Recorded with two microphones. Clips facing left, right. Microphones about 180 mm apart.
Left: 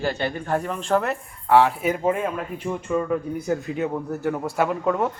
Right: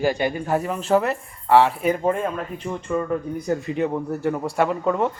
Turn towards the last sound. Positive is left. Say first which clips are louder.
# right 1 dB
turn(degrees=0)  # may be behind; listen again after turning